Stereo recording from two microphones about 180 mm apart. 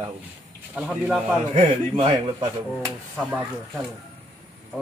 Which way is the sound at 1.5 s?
25° right (ahead or behind).